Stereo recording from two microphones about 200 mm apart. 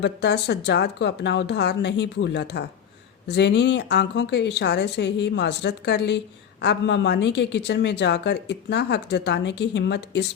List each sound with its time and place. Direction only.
0.0 s speech: 55° left (ahead or behind)